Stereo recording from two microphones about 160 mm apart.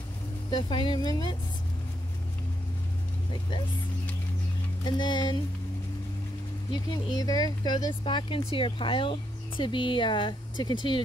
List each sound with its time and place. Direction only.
0.5 s speech: 30° left (ahead or behind)
4.8 s speech: 30° left (ahead or behind)
6.7 s speech: 25° left (ahead or behind)